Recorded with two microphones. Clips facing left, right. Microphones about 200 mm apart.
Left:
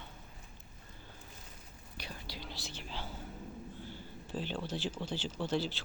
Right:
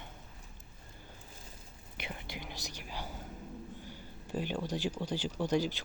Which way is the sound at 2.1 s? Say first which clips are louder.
Right 2 dB; 20° right (ahead or behind).